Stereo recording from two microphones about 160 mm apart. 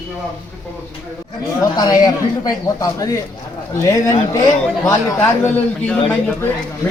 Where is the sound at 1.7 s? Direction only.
25° left (ahead or behind).